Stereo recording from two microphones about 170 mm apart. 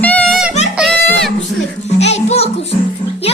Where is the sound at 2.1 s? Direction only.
40° left (ahead or behind).